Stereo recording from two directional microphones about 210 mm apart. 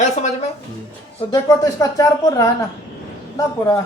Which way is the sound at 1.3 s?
20° left (ahead or behind).